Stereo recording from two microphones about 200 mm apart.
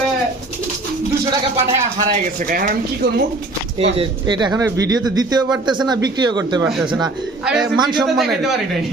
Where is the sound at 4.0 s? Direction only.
20° right (ahead or behind).